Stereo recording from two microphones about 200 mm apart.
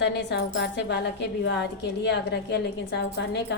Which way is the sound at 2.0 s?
60° left (ahead or behind).